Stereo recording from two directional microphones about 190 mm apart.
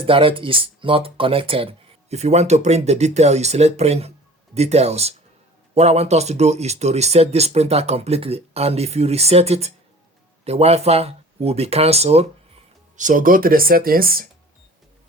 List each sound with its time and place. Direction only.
0.0 s speech: 30° right (ahead or behind)
13.0 s speech: 45° right (ahead or behind)